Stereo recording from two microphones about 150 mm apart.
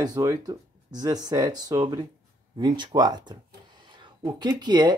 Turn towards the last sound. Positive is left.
turn(degrees=-30)  # may be behind; listen again after turning